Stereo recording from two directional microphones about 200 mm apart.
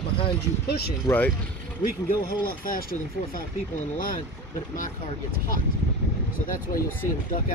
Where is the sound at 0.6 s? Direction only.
50° left (ahead or behind).